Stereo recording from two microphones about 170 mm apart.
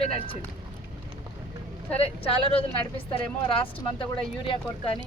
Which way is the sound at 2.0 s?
35° left (ahead or behind).